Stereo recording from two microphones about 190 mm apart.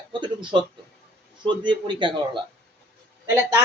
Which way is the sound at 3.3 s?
10° right (ahead or behind).